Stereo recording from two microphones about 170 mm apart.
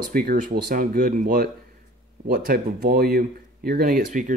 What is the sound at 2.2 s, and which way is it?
Speech, 60° right (ahead or behind).